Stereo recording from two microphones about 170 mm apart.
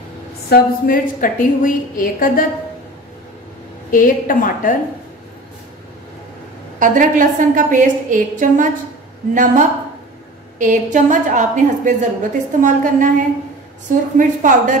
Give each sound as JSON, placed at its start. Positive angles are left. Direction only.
{"t": 0.5, "sound": "a woman's voice", "side_deg": 60}
{"t": 3.9, "sound": "a woman's voice", "side_deg": 50}
{"t": 6.8, "sound": "a woman's voice", "side_deg": -50}
{"t": 14.1, "sound": "a woman's voice", "side_deg": -50}